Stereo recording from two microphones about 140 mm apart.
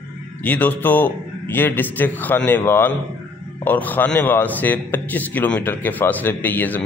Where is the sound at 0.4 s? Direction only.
10° left (ahead or behind).